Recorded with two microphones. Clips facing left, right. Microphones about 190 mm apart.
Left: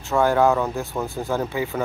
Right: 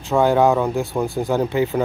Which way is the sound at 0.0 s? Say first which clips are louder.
Right 3 dB; 15° right (ahead or behind).